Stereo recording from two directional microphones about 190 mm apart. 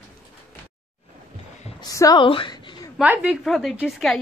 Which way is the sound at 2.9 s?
5° right (ahead or behind).